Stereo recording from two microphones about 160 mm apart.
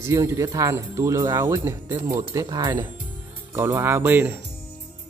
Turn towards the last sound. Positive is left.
turn(degrees=-10)  # may be behind; listen again after turning